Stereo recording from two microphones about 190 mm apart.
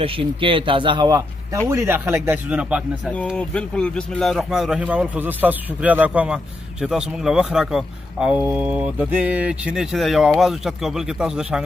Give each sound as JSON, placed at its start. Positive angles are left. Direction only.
{"t": 0.0, "sound": "a man's voice", "side_deg": -30}
{"t": 3.3, "sound": "speech", "side_deg": 5}